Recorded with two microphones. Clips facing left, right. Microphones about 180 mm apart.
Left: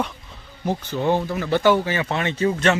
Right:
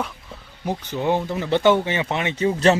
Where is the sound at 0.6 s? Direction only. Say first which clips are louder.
Left 1 dB; 15° right (ahead or behind).